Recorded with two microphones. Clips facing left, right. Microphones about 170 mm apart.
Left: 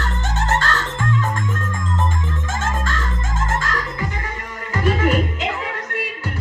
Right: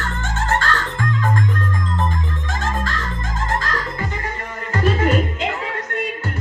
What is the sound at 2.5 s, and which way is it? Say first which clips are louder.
Music: even; 45° left (ahead or behind).